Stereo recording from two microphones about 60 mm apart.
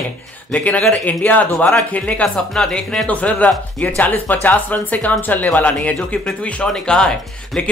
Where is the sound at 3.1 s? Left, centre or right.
Left.